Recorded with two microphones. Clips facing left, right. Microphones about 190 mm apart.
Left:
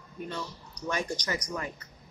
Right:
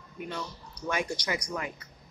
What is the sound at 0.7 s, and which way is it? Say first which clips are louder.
Speech: right 1 dB; 10° right (ahead or behind).